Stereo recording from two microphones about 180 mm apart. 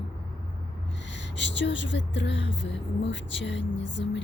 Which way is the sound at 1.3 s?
80° left.